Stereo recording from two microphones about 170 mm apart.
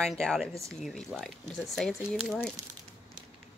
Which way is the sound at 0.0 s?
5° left (ahead or behind).